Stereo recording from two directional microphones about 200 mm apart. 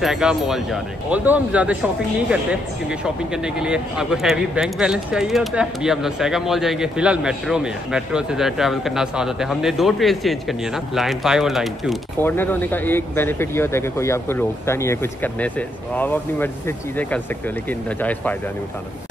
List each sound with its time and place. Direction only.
0.0 s speech: centre (ahead or behind)
12.2 s speech: 10° left (ahead or behind)